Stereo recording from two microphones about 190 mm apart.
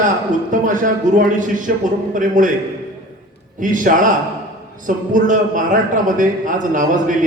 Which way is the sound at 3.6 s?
45° right (ahead or behind).